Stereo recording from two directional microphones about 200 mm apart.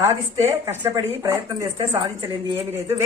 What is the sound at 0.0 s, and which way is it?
Speech, 15° right (ahead or behind).